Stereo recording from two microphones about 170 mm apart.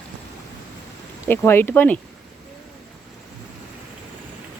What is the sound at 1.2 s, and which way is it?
Speech, 15° left (ahead or behind).